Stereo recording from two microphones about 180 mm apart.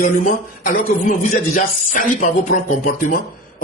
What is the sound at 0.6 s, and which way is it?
Speech, 50° left (ahead or behind).